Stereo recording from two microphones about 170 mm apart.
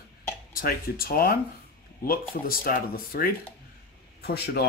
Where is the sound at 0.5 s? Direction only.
60° left (ahead or behind).